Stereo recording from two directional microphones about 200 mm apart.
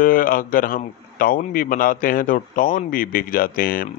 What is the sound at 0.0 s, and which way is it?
A man's voice, 45° left (ahead or behind).